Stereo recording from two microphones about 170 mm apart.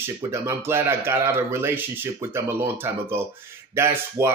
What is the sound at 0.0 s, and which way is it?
A man's voice, 15° right (ahead or behind).